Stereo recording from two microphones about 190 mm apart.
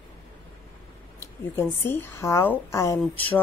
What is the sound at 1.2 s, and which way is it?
Speech, 10° left (ahead or behind).